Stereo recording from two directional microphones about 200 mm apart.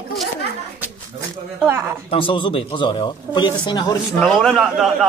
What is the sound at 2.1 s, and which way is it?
Speech, 25° left (ahead or behind).